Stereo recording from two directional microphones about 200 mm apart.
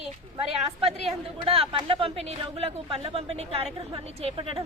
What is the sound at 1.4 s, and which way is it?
A woman's voice, 30° right (ahead or behind).